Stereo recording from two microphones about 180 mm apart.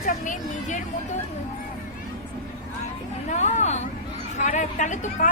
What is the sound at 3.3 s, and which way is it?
A woman's voice, 40° left (ahead or behind).